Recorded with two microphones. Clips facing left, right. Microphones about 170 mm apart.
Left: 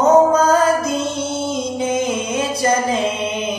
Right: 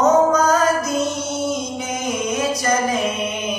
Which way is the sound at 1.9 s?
25° left (ahead or behind).